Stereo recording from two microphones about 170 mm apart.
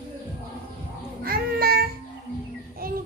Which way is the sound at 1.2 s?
65° right (ahead or behind).